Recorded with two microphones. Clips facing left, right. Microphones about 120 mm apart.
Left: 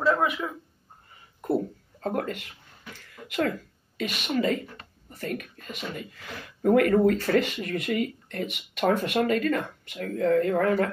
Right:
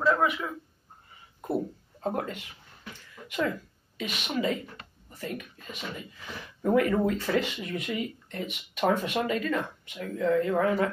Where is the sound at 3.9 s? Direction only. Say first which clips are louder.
Left 4 dB; 55° left (ahead or behind).